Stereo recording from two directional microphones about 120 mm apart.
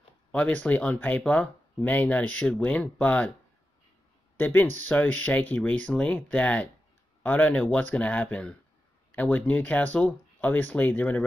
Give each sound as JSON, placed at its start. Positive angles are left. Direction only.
{"t": 0.3, "sound": "speech", "side_deg": 10}
{"t": 4.4, "sound": "speech", "side_deg": 15}